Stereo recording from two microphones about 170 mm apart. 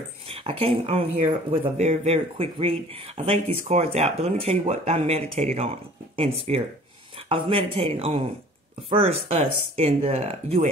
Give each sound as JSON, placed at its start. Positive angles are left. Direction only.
{"t": 0.3, "sound": "speech", "side_deg": -35}